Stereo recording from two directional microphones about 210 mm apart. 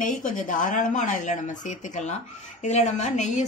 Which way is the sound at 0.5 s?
40° left (ahead or behind).